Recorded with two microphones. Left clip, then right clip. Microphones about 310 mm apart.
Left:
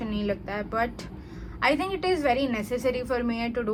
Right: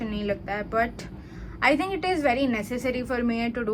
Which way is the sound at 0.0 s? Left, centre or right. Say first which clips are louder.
Right 1 dB; centre.